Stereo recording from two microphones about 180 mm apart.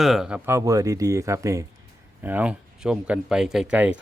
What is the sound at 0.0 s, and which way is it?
Speech, centre (ahead or behind).